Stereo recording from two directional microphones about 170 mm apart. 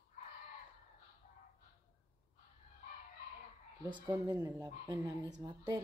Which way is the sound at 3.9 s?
25° right (ahead or behind).